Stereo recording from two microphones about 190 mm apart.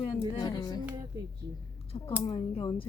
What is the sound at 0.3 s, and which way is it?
Music, 20° left (ahead or behind).